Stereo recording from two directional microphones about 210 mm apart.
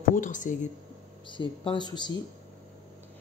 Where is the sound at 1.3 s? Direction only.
20° left (ahead or behind).